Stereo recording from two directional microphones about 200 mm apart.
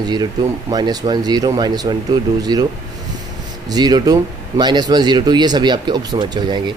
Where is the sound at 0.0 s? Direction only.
20° right (ahead or behind).